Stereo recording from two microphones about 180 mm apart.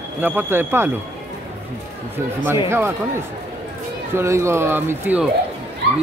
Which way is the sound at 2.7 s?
15° right (ahead or behind).